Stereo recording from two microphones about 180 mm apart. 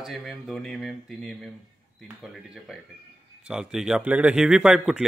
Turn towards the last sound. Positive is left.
turn(degrees=-5)  # may be behind; listen again after turning